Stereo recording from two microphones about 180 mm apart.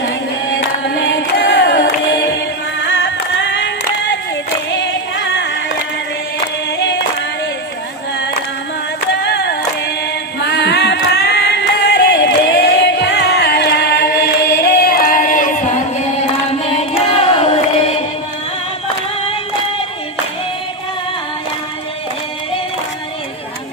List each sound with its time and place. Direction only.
0.9 s singing: 90° left
4.7 s music: 85° left
6.7 s a capella: 75° left (ahead or behind)
9.2 s singing: 70° left (ahead or behind)
10.6 s music: 70° left (ahead or behind); by 15.8 s 45° left (ahead or behind)
16.2 s singing: 35° left (ahead or behind)